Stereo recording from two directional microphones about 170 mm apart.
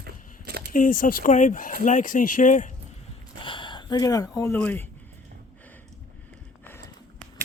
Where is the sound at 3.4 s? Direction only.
30° left (ahead or behind).